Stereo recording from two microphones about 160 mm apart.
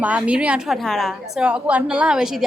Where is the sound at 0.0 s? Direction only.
10° right (ahead or behind).